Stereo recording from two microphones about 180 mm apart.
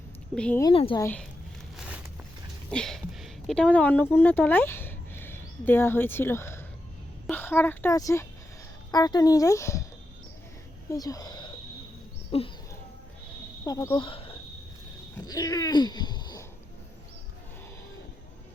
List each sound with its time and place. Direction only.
0.3 s a woman's voice: 5° left (ahead or behind)
0.6 s a woman's voice: 30° left (ahead or behind)
0.9 s speech: 10° left (ahead or behind)
1.7 s a sound: 5° right (ahead or behind)
2.6 s a woman's voice: 5° left (ahead or behind)
10.8 s speech: 20° left (ahead or behind)
12.3 s a sound: 35° left (ahead or behind)
13.7 s speech: 20° left (ahead or behind)